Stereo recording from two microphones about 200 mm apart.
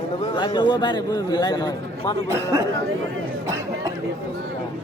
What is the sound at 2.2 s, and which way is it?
Speech, 10° right (ahead or behind).